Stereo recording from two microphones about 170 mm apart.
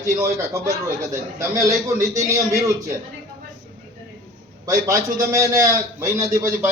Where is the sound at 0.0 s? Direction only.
15° right (ahead or behind).